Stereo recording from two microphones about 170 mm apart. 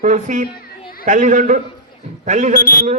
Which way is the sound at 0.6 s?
60° left (ahead or behind).